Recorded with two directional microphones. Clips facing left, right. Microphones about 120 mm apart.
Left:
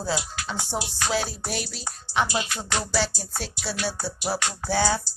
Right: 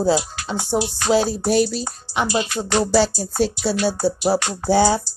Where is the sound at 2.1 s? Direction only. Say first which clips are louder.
Right 3 dB; 10° right (ahead or behind).